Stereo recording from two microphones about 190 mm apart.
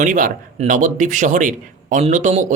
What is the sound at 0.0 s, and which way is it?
Speech, 45° right (ahead or behind).